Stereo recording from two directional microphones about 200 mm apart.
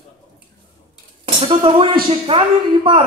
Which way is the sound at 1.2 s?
25° right (ahead or behind).